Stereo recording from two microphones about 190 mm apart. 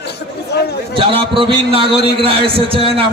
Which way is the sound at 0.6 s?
55° left (ahead or behind).